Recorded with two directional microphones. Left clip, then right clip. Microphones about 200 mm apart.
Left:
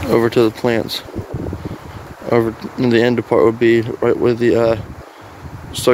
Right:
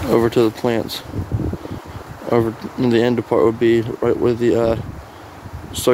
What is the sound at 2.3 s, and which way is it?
Speech, centre (ahead or behind).